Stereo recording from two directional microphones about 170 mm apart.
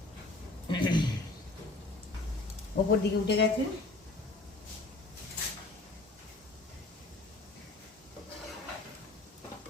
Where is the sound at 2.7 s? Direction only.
70° left (ahead or behind).